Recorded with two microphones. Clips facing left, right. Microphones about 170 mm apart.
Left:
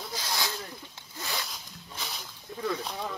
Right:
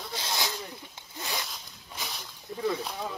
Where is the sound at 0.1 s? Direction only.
25° right (ahead or behind).